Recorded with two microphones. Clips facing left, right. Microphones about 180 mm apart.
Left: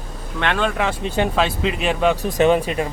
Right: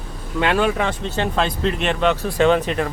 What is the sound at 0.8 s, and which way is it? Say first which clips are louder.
Speech: left 2 dB; 10° left (ahead or behind).